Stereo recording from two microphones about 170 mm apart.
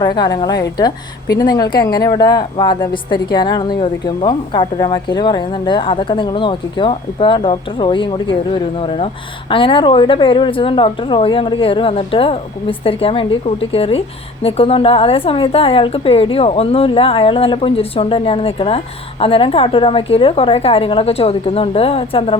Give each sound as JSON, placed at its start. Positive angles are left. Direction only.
{"t": 0.0, "sound": "a woman's voice", "side_deg": 25}